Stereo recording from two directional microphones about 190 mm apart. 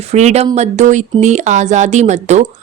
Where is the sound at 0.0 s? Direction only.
35° right (ahead or behind).